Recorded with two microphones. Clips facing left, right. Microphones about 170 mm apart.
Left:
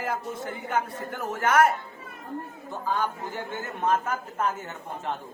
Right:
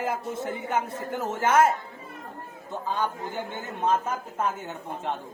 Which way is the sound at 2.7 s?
20° right (ahead or behind).